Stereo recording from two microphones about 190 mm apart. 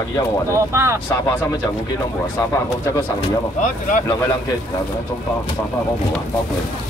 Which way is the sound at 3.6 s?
45° left (ahead or behind).